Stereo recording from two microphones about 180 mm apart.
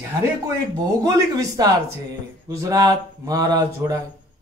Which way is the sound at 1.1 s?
20° right (ahead or behind).